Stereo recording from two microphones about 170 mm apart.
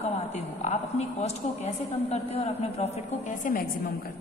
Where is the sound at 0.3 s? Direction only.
45° left (ahead or behind).